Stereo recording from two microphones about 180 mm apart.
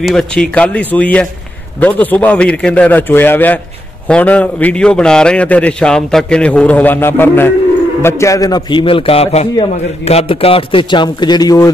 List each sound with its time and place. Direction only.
0.0 s a man's voice: 5° left (ahead or behind); by 11.7 s 20° left (ahead or behind)